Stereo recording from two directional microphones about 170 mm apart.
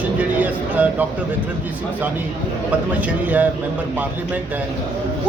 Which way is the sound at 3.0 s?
10° right (ahead or behind).